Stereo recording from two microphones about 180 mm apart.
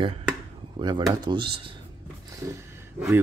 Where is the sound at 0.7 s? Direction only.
25° right (ahead or behind).